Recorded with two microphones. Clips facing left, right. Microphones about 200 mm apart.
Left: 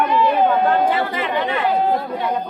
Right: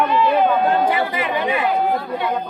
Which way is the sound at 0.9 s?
10° right (ahead or behind).